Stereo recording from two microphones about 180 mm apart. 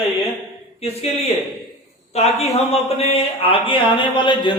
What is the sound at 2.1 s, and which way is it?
A woman's voice, 35° left (ahead or behind).